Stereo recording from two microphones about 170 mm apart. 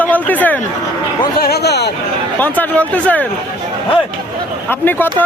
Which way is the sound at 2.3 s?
10° left (ahead or behind).